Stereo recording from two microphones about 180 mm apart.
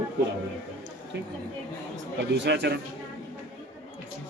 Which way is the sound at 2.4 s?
70° right (ahead or behind).